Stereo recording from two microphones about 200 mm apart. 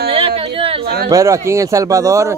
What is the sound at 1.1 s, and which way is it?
Speech, 15° right (ahead or behind).